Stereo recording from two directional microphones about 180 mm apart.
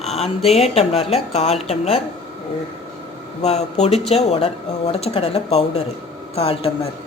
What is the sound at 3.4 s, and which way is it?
Speech, 35° left (ahead or behind).